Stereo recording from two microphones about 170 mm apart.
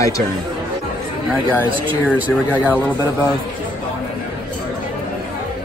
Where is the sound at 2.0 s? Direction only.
10° right (ahead or behind).